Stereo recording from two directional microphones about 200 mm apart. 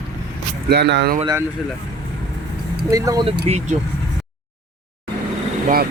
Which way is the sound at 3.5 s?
35° right (ahead or behind).